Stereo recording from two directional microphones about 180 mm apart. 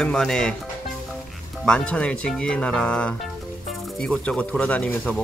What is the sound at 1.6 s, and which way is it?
Speech, 5° left (ahead or behind).